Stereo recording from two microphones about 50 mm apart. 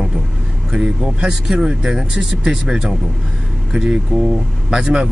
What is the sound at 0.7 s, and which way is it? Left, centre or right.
Speech, centre.